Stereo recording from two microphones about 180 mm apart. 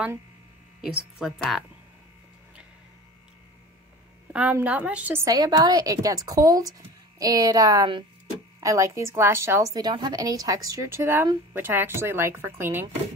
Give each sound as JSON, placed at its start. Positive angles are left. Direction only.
{"t": 0.8, "sound": "a woman's voice", "side_deg": -5}
{"t": 4.3, "sound": "a woman's voice", "side_deg": -5}